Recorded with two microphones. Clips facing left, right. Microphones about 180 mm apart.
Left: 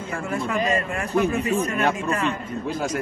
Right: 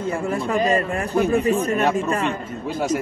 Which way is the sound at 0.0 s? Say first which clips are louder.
Right 4 dB; 30° right (ahead or behind).